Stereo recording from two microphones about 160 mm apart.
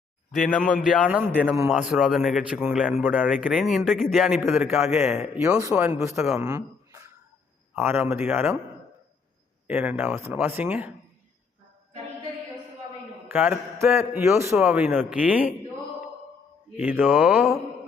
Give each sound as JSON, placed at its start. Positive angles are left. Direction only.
{"t": 0.3, "sound": "a man's voice", "side_deg": 0}
{"t": 6.3, "sound": "a sound", "side_deg": -20}
{"t": 7.8, "sound": "a man's voice", "side_deg": -15}
{"t": 9.6, "sound": "a man's voice", "side_deg": -10}
{"t": 13.2, "sound": "a man's voice", "side_deg": -10}
{"t": 16.7, "sound": "a man's voice", "side_deg": -10}